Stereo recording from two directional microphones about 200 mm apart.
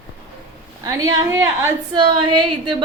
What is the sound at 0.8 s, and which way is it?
A woman's voice, 20° right (ahead or behind).